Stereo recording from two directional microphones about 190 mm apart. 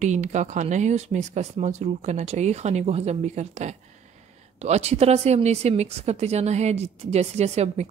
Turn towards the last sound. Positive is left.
turn(degrees=-35)  # may be behind; listen again after turning